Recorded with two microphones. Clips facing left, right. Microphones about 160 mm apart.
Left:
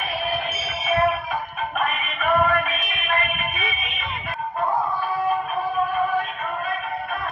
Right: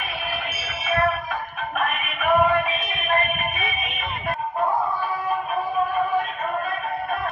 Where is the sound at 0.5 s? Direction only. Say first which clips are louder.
Left 2 dB; 15° left (ahead or behind).